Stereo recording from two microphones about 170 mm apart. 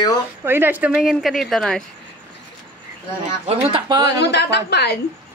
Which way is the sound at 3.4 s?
35° right (ahead or behind).